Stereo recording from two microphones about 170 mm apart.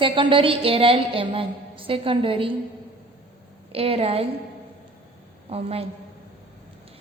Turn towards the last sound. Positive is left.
turn(degrees=-35)  # may be behind; listen again after turning